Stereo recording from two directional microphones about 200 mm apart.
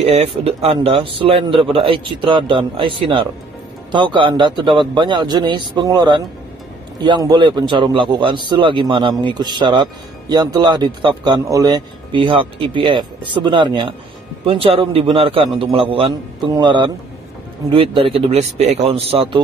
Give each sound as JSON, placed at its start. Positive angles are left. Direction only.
{"t": 0.0, "sound": "speech", "side_deg": -30}